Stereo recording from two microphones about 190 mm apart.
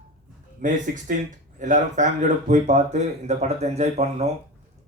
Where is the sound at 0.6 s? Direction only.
45° right (ahead or behind).